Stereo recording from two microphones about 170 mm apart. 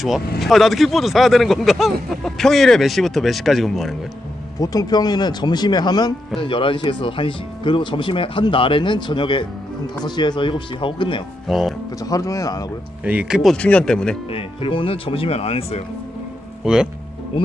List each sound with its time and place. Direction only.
0.4 s speech: centre (ahead or behind)
4.6 s speech: 20° left (ahead or behind)
11.4 s speech: centre (ahead or behind)
12.0 s speech: 20° left (ahead or behind)
13.0 s speech: 10° right (ahead or behind)
14.3 s speech: 30° left (ahead or behind)
16.6 s speech: 5° right (ahead or behind)